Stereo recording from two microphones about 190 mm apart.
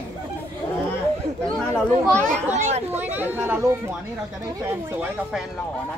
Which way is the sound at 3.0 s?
10° right (ahead or behind).